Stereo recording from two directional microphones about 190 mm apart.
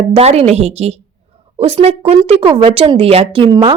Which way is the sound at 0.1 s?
30° right (ahead or behind).